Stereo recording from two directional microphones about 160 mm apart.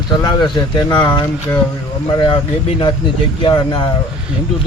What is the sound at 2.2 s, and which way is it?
A man's voice, 35° left (ahead or behind).